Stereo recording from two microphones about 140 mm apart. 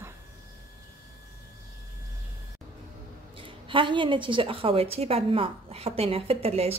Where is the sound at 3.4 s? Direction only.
35° right (ahead or behind).